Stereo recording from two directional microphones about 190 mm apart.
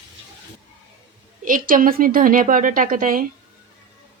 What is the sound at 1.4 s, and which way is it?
A woman's voice, 45° right (ahead or behind).